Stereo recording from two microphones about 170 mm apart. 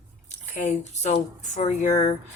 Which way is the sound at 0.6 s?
40° left (ahead or behind).